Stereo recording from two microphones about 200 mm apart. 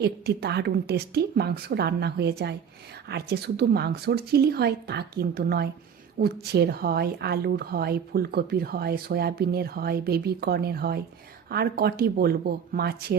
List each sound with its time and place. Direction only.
0.0 s a woman's voice: 55° right (ahead or behind)